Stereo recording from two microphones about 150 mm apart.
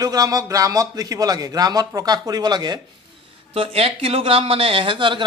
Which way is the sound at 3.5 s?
40° right (ahead or behind).